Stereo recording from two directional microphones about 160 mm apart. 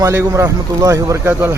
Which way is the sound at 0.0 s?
15° right (ahead or behind).